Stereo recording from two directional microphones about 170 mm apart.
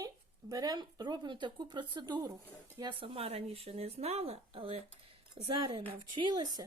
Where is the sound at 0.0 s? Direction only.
20° right (ahead or behind).